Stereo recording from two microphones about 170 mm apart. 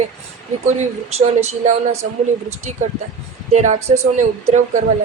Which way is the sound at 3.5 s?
45° right (ahead or behind).